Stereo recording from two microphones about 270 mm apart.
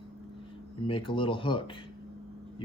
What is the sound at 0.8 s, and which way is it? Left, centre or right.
Speech, centre.